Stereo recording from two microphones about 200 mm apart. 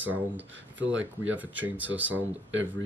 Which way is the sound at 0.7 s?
70° right (ahead or behind).